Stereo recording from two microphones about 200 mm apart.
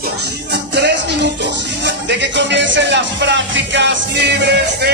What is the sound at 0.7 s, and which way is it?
Music, 60° right (ahead or behind).